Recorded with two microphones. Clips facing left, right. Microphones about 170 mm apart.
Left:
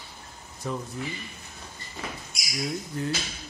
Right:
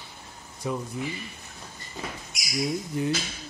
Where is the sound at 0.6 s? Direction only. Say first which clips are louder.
Right 2 dB; 10° right (ahead or behind).